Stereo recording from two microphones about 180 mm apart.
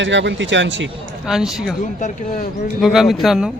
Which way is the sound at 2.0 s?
45° left (ahead or behind).